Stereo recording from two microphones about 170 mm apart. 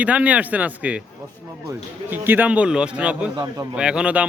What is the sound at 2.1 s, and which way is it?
Speech, 10° right (ahead or behind).